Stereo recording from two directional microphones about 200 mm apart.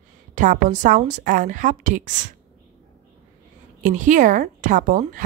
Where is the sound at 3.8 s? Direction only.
40° right (ahead or behind).